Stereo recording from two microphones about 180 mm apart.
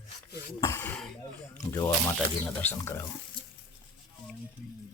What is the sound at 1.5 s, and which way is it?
Speech, 20° left (ahead or behind).